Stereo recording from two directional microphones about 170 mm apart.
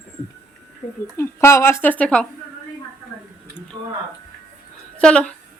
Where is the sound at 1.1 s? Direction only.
15° left (ahead or behind).